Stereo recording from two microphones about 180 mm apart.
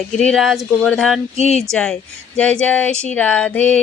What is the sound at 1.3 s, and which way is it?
Speech, 35° left (ahead or behind).